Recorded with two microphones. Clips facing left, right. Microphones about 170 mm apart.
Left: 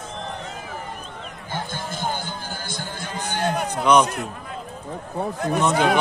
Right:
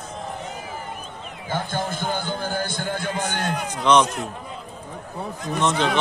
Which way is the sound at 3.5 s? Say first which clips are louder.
Left 3 dB; 60° left (ahead or behind).